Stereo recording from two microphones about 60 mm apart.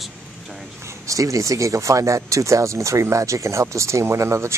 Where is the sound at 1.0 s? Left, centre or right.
Right.